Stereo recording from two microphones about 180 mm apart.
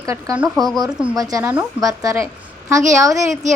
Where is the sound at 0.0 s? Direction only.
20° right (ahead or behind).